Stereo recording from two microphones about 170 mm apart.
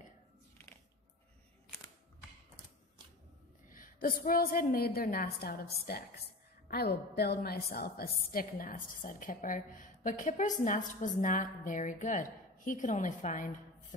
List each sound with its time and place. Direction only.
3.7 s a woman's voice: 55° left (ahead or behind)